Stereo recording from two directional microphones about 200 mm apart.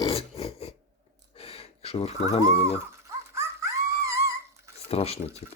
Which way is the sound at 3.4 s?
15° right (ahead or behind).